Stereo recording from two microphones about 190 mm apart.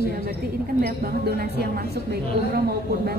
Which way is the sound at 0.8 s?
55° right (ahead or behind).